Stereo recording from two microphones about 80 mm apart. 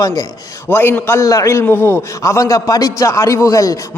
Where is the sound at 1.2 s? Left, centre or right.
Left.